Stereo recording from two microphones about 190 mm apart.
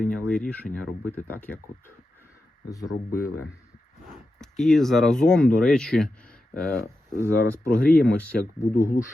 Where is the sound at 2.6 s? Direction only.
20° left (ahead or behind).